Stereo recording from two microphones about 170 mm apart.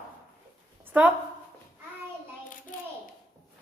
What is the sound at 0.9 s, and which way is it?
Speech, 10° right (ahead or behind).